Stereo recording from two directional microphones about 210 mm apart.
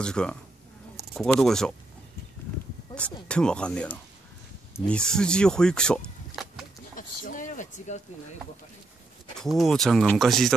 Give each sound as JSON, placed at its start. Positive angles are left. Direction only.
{"t": 0.0, "sound": "speech", "side_deg": 5}
{"t": 2.9, "sound": "speech", "side_deg": 5}
{"t": 7.0, "sound": "a sound", "side_deg": 40}
{"t": 9.4, "sound": "speech", "side_deg": 0}